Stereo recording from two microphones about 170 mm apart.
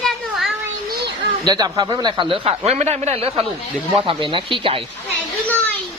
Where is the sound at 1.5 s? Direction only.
20° right (ahead or behind).